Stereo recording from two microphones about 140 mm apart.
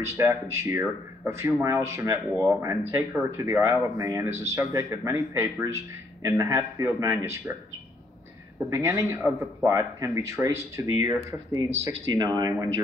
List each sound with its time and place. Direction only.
0.0 s speech: 20° right (ahead or behind)
8.5 s speech: 20° right (ahead or behind)